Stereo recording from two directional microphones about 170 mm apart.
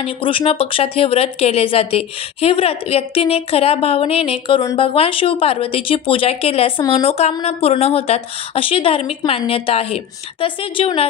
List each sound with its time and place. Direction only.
0.0 s a woman's voice: 30° left (ahead or behind)